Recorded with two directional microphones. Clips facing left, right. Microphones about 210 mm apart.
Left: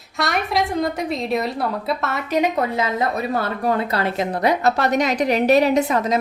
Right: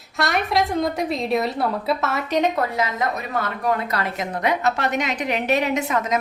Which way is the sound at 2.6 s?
25° left (ahead or behind).